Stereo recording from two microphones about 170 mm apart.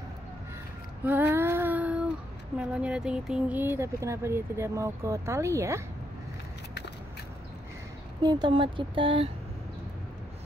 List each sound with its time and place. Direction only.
1.0 s child singing: 10° right (ahead or behind)
2.5 s speech: 5° right (ahead or behind)
8.2 s speech: 25° right (ahead or behind)